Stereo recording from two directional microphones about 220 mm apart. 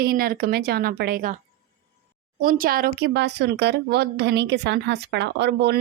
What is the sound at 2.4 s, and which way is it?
A woman's voice, 40° right (ahead or behind).